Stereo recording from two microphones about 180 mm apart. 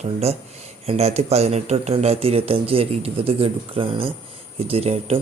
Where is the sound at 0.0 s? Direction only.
35° right (ahead or behind).